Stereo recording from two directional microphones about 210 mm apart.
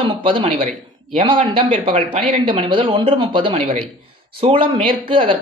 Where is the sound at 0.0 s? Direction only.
25° right (ahead or behind).